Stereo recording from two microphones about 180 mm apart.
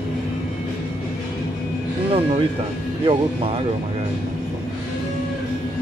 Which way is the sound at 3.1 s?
30° right (ahead or behind).